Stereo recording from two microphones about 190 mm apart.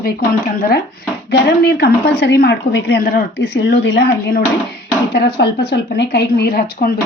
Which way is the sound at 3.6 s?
65° left (ahead or behind).